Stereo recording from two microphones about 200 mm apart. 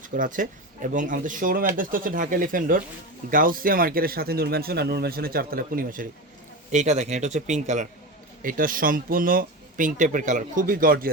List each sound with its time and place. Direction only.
0.1 s a man's voice: 40° right (ahead or behind)